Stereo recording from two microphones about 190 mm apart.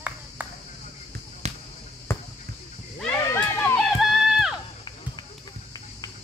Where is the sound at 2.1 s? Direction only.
15° left (ahead or behind).